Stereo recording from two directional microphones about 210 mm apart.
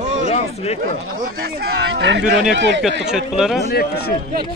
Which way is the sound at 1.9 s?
55° right (ahead or behind).